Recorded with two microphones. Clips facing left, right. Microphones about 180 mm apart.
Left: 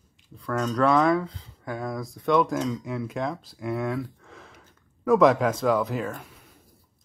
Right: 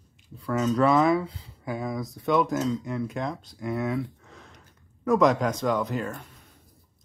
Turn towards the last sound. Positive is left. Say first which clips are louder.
# left 1 dB
turn(degrees=0)  # may be behind; listen again after turning